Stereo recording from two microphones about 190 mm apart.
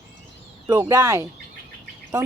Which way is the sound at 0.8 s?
15° right (ahead or behind).